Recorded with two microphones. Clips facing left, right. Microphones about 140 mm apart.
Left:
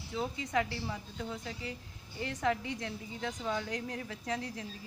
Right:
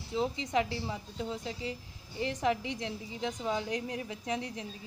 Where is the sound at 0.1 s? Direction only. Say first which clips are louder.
Right 3 dB; 20° right (ahead or behind).